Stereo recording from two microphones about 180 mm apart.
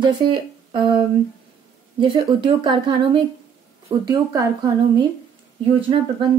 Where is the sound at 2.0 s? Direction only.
30° right (ahead or behind).